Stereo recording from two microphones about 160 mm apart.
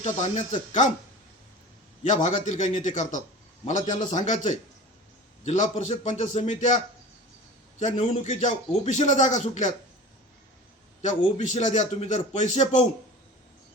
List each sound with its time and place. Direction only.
0.0 s speech: 50° left (ahead or behind)
2.0 s speech: 50° left (ahead or behind)
11.0 s speech: 50° left (ahead or behind)